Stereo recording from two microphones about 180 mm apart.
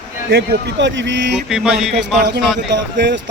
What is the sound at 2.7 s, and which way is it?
Speech, 80° right.